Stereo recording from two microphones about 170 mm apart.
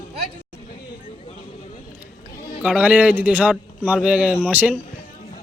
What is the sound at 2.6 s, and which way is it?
A man's voice, 10° right (ahead or behind).